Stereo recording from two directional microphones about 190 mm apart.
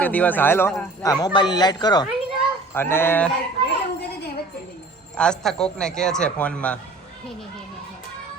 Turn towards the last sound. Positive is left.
turn(degrees=5)  # may be behind; listen again after turning